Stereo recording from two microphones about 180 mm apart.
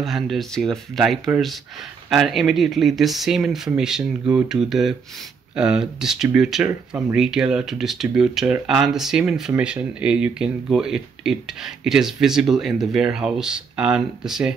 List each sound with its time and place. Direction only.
0.0 s speech: centre (ahead or behind)